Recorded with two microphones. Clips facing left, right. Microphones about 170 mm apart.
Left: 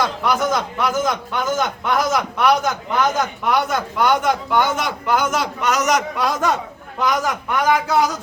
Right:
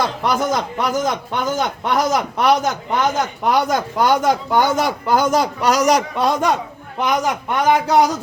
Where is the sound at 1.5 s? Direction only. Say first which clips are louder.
Right 1 dB; 35° right (ahead or behind).